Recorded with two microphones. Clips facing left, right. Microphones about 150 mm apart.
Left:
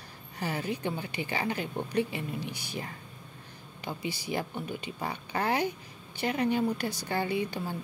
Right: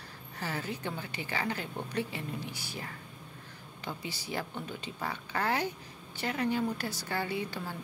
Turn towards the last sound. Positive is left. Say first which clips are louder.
# left 4 dB
turn(degrees=15)  # may be behind; listen again after turning